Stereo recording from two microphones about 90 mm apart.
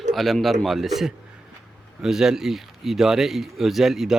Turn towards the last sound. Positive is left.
turn(degrees=-5)  # may be behind; listen again after turning